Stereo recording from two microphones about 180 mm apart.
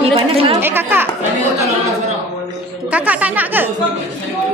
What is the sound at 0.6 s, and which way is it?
Speech, 10° right (ahead or behind).